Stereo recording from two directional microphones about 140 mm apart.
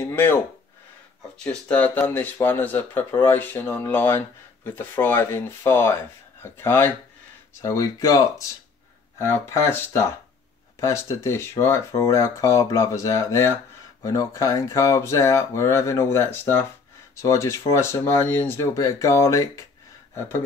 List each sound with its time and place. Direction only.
0.1 s speech: 15° left (ahead or behind)
1.4 s speech: 10° left (ahead or behind)